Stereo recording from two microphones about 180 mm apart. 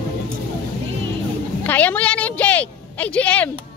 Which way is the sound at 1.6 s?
10° left (ahead or behind).